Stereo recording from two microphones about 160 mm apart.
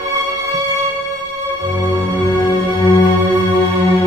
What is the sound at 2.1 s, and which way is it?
Music, 20° left (ahead or behind).